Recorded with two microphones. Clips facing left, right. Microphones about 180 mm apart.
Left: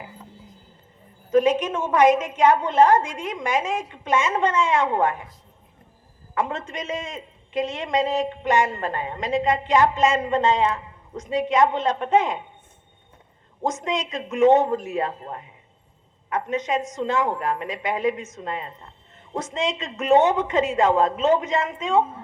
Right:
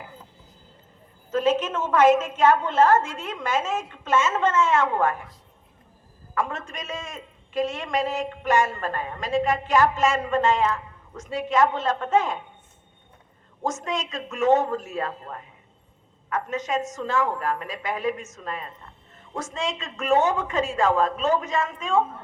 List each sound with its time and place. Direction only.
1.3 s a woman's voice: 15° left (ahead or behind)
6.3 s a man's voice: 20° left (ahead or behind)
13.6 s a man's voice: 20° left (ahead or behind)